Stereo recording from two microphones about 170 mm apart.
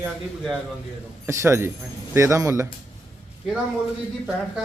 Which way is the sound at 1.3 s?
15° right (ahead or behind).